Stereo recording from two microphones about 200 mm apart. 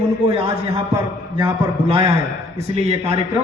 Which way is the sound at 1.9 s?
25° right (ahead or behind).